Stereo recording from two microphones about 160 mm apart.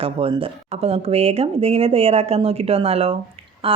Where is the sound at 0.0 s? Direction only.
35° right (ahead or behind).